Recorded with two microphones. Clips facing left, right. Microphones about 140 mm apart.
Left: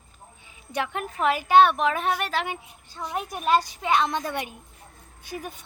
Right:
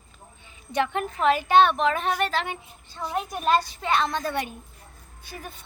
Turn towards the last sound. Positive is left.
turn(degrees=15)  # may be behind; listen again after turning